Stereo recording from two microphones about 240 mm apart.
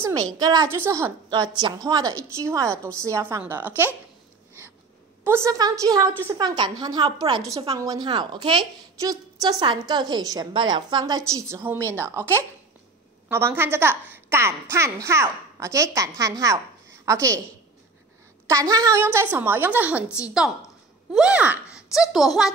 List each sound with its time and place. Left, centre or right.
0.0 s a woman's voice: centre
5.2 s a woman's voice: centre
18.5 s a woman's voice: centre
21.1 s speech: centre